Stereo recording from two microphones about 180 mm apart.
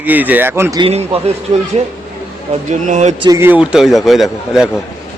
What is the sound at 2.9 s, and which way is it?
Speech, 40° right (ahead or behind).